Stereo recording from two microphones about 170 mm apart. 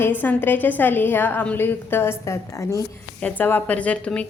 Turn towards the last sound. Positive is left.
turn(degrees=5)  # may be behind; listen again after turning